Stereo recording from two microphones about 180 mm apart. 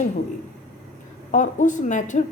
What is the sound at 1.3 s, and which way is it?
Speech, 45° left (ahead or behind).